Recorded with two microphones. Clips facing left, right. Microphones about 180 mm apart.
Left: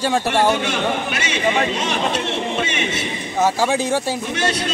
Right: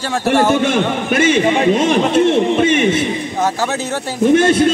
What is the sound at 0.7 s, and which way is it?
A man's voice, 50° right (ahead or behind).